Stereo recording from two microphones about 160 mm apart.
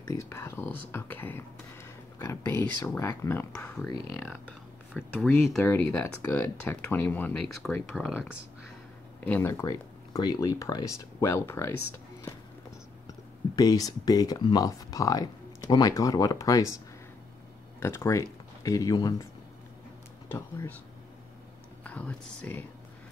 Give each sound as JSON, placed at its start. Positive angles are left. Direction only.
{"t": 0.1, "sound": "speech", "side_deg": 15}
{"t": 9.2, "sound": "speech", "side_deg": 15}
{"t": 13.6, "sound": "speech", "side_deg": 25}
{"t": 17.7, "sound": "speech", "side_deg": 15}
{"t": 20.2, "sound": "speech", "side_deg": 15}
{"t": 21.8, "sound": "speech", "side_deg": 10}